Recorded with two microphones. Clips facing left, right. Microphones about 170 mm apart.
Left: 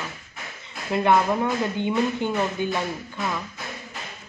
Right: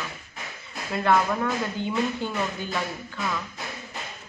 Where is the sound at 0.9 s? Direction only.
20° left (ahead or behind).